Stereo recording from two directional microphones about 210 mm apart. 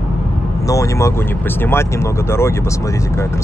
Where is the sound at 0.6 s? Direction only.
15° left (ahead or behind).